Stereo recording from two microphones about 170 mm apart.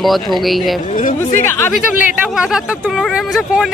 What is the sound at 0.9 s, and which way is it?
Speech, 50° left (ahead or behind).